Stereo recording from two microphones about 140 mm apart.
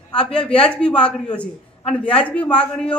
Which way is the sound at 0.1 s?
10° left (ahead or behind).